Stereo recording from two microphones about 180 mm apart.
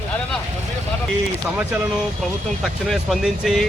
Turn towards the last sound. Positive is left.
turn(degrees=0)  # may be behind; listen again after turning